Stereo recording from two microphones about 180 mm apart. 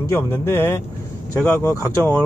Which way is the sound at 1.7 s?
15° left (ahead or behind).